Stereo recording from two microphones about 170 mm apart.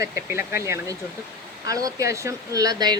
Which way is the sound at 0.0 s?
15° right (ahead or behind).